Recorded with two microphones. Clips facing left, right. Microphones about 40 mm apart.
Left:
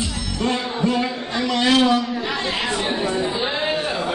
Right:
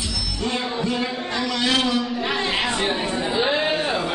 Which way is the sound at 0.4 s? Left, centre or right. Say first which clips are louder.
Left 3 dB; left.